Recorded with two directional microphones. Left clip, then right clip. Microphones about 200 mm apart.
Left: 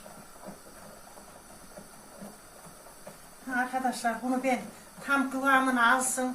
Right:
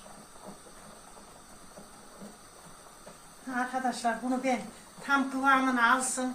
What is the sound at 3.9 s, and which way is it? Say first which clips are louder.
A woman's voice: even; centre (ahead or behind).